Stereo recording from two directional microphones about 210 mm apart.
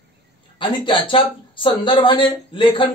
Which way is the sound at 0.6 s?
25° left (ahead or behind).